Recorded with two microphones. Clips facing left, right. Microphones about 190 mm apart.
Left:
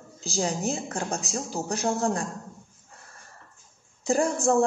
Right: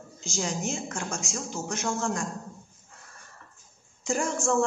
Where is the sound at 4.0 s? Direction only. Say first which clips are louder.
Left 4 dB; 35° left (ahead or behind).